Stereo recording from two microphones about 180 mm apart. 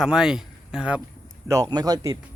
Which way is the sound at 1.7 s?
20° right (ahead or behind).